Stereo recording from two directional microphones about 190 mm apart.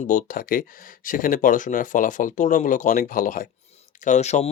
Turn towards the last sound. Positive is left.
turn(degrees=35)  # may be behind; listen again after turning